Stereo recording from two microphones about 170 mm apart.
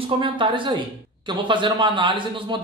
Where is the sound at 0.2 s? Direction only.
30° right (ahead or behind).